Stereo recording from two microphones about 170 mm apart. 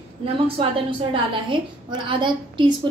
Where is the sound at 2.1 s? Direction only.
30° right (ahead or behind).